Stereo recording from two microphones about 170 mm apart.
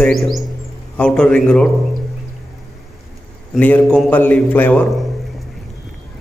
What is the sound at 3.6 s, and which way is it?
A man's voice, 10° left (ahead or behind).